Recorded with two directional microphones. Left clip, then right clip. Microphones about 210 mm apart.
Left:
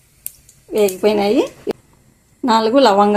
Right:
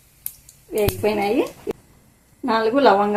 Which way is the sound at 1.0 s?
35° left (ahead or behind).